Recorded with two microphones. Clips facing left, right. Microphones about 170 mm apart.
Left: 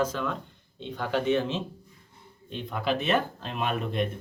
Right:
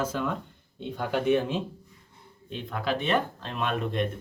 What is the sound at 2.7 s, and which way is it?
Speech, centre (ahead or behind).